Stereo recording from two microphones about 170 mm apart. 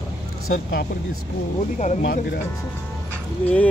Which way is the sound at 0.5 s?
70° left (ahead or behind).